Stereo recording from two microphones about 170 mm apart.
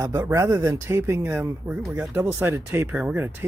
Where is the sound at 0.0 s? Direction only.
20° right (ahead or behind).